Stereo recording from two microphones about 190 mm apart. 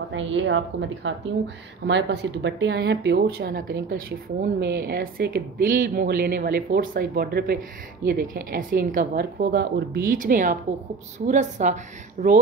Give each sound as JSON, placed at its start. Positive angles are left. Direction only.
{"t": 0.1, "sound": "a woman's voice", "side_deg": -85}
{"t": 1.9, "sound": "a woman's voice", "side_deg": -65}